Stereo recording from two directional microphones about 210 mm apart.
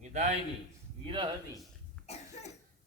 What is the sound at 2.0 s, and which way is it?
Cough, 30° left (ahead or behind).